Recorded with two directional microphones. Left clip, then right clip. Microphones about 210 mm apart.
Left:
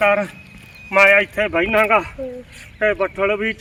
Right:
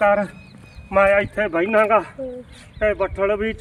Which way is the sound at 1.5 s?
35° left (ahead or behind).